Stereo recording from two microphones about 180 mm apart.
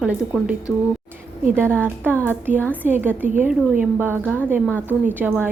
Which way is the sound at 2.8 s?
45° right (ahead or behind).